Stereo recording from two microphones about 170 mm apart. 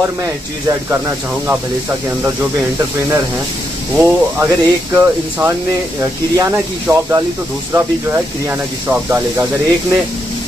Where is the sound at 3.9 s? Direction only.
10° right (ahead or behind).